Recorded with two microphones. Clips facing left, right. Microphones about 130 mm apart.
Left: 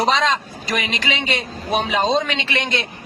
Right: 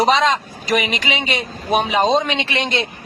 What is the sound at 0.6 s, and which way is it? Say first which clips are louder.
A man's voice: right 7 dB; 15° right (ahead or behind).